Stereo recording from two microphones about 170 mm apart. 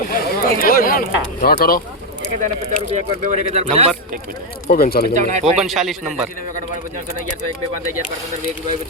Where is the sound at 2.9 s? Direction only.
45° right (ahead or behind).